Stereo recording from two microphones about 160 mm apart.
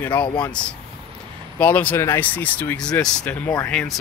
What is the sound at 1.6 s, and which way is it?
Speech, 10° left (ahead or behind).